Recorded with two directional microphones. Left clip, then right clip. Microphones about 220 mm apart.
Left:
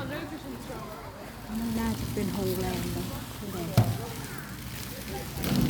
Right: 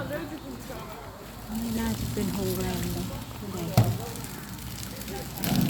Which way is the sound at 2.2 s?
Centre (ahead or behind).